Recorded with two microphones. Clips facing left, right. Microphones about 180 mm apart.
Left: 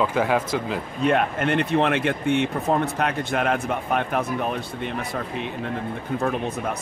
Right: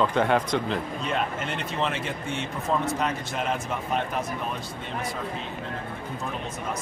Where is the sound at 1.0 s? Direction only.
60° left (ahead or behind).